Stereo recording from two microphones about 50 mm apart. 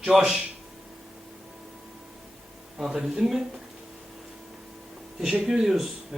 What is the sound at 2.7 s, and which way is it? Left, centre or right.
Speech, centre.